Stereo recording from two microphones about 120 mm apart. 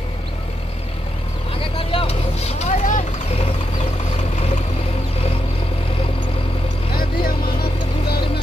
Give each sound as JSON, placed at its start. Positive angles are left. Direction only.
{"t": 1.6, "sound": "vehicle", "side_deg": 50}